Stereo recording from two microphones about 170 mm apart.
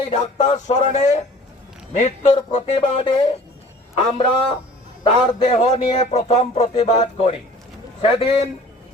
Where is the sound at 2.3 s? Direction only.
30° left (ahead or behind).